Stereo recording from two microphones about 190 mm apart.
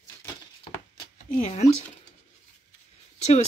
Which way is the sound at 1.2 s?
40° left (ahead or behind).